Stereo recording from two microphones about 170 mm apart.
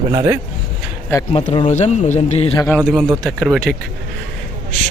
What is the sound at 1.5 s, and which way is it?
Speech, 35° left (ahead or behind).